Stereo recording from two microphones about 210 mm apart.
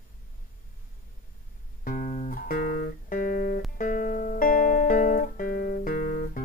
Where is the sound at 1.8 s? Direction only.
40° left (ahead or behind).